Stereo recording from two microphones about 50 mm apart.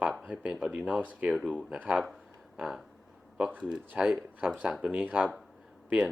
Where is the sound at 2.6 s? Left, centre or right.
Centre.